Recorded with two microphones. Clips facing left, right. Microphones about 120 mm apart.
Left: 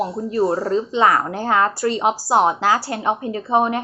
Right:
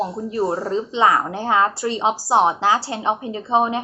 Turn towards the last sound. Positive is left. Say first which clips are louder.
# left 1 dB
turn(degrees=-20)  # may be behind; listen again after turning